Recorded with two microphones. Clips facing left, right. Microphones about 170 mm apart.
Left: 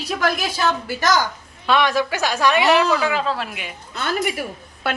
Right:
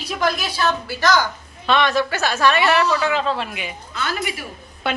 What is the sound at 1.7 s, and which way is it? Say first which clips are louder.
A woman's voice: even; 10° left (ahead or behind).